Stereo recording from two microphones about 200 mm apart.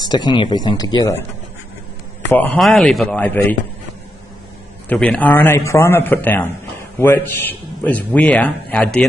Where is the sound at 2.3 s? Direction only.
10° left (ahead or behind).